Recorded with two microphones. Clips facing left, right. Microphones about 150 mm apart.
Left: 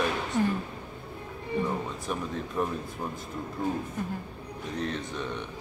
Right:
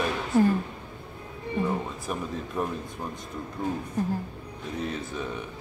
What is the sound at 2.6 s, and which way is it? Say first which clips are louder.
Speech: even; 5° right (ahead or behind).